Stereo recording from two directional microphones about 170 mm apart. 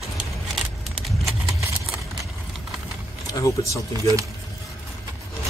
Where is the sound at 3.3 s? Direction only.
20° left (ahead or behind).